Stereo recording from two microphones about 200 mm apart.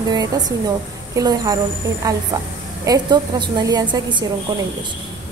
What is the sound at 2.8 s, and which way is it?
A woman's voice, 20° right (ahead or behind).